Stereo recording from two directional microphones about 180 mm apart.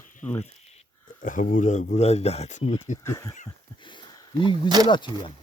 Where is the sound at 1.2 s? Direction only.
45° left (ahead or behind).